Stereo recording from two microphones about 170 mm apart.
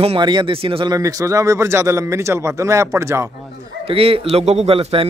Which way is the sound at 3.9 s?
35° right (ahead or behind).